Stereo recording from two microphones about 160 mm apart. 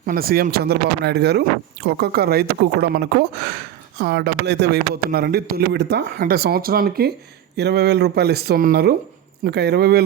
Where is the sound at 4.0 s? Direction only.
75° right (ahead or behind).